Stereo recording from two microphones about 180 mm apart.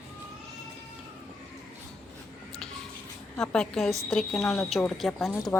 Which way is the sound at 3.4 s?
5° left (ahead or behind).